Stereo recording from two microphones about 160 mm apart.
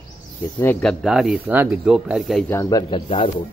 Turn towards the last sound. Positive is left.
turn(degrees=35)  # may be behind; listen again after turning